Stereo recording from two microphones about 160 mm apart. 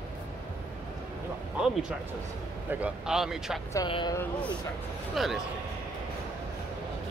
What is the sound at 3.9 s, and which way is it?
Speech, 30° left (ahead or behind).